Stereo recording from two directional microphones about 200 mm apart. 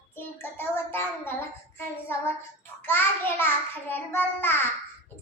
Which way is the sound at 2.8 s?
10° left (ahead or behind).